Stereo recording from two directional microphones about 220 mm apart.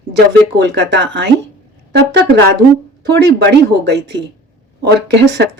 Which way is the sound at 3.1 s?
50° right (ahead or behind).